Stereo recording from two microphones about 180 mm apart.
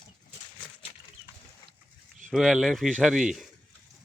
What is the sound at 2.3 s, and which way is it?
Speech, centre (ahead or behind).